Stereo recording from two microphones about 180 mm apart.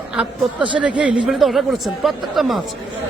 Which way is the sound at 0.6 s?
25° right (ahead or behind).